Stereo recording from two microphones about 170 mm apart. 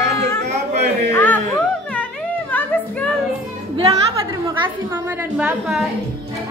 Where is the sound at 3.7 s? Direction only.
35° right (ahead or behind).